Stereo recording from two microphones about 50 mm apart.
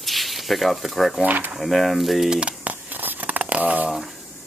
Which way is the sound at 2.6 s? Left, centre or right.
Right.